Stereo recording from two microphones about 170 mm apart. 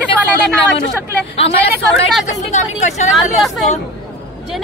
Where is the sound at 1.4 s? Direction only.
35° left (ahead or behind).